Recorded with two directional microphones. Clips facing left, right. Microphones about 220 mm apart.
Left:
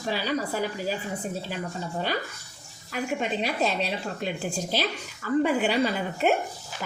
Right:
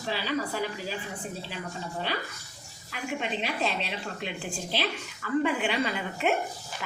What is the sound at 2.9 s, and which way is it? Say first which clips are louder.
A woman's voice: left 4 dB; 40° left (ahead or behind).